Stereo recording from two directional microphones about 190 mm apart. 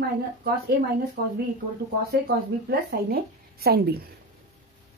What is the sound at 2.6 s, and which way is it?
A woman's voice, 55° right (ahead or behind).